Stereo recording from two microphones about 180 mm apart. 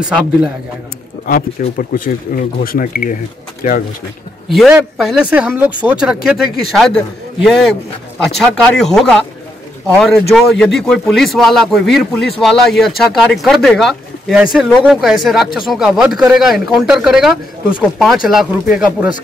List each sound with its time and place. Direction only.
1.8 s speech: 50° left (ahead or behind)
4.5 s speech: centre (ahead or behind)